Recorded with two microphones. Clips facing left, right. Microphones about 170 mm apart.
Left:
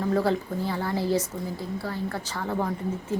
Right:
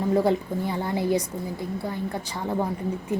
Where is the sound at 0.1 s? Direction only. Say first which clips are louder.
Right 3 dB; 20° right (ahead or behind).